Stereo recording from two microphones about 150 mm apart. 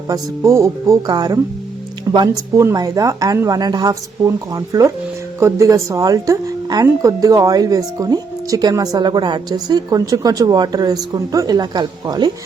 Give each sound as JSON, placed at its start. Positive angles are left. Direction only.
{"t": 0.1, "sound": "speech", "side_deg": -20}